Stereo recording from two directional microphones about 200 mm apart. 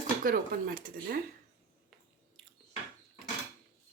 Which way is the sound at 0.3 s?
45° right (ahead or behind).